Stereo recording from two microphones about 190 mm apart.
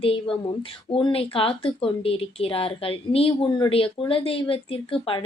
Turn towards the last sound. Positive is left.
turn(degrees=30)  # may be behind; listen again after turning